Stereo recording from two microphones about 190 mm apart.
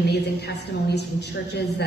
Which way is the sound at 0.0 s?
60° left (ahead or behind).